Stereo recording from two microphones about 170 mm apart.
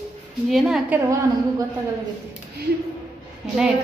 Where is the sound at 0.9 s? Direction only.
20° right (ahead or behind).